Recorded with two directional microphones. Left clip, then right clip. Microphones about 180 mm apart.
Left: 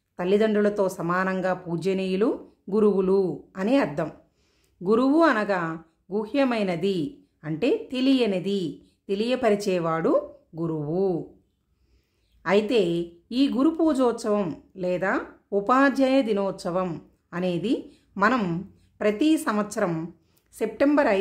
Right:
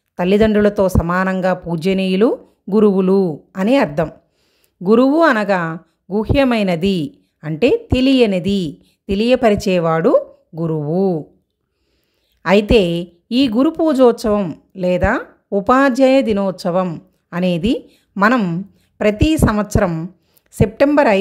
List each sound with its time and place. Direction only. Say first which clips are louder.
0.1 s a woman's voice: right 8 dB; 40° right (ahead or behind)
12.4 s a woman's voice: right 9 dB; 45° right (ahead or behind)